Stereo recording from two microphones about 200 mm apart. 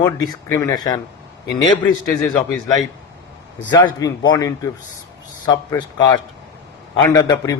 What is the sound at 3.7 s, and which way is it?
A man's voice, 20° left (ahead or behind).